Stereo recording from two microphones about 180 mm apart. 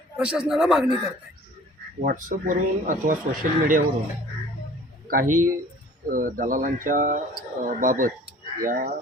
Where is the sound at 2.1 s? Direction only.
45° right (ahead or behind).